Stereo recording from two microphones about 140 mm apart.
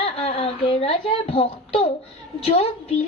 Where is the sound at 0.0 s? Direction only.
45° left (ahead or behind).